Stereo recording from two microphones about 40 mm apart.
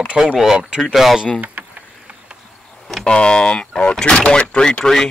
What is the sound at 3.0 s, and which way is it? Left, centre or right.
Speech, left.